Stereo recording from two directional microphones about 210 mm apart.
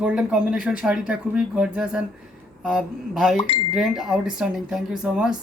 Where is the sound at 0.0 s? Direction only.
5° right (ahead or behind).